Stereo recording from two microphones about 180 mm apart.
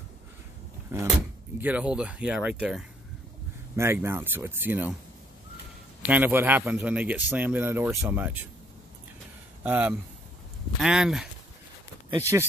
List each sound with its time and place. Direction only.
0.9 s speech: 15° right (ahead or behind)
3.7 s speech: 15° right (ahead or behind)
6.0 s speech: 10° right (ahead or behind)
9.6 s speech: 10° right (ahead or behind)
12.2 s speech: 15° right (ahead or behind)